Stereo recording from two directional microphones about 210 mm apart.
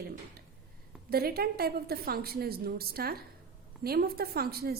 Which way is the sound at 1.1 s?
45° right (ahead or behind).